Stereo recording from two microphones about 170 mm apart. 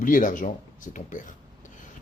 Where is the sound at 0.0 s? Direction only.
50° left (ahead or behind).